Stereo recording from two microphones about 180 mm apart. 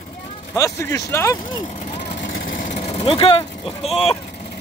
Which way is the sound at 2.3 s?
50° left (ahead or behind).